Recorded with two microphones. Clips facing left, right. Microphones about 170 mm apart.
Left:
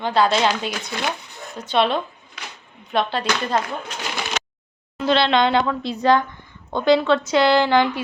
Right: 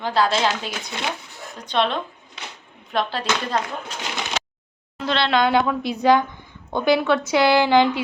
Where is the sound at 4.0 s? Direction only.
20° right (ahead or behind).